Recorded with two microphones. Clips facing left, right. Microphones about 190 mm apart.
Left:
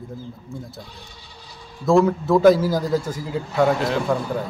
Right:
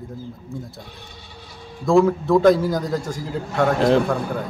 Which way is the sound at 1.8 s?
Centre (ahead or behind).